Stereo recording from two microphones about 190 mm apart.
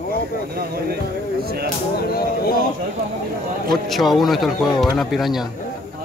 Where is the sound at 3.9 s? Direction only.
Centre (ahead or behind).